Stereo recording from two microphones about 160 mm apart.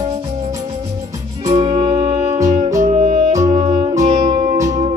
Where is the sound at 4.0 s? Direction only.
35° right (ahead or behind).